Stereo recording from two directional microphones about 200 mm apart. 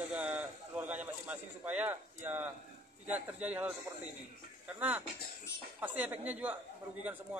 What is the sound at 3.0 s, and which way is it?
A man's voice, 5° right (ahead or behind).